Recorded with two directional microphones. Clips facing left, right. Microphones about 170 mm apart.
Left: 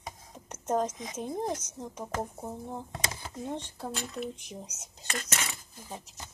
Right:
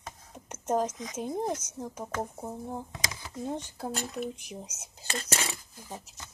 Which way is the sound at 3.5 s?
10° right (ahead or behind).